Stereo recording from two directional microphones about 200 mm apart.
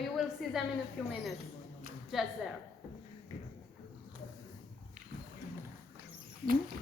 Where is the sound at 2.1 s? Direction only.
Centre (ahead or behind).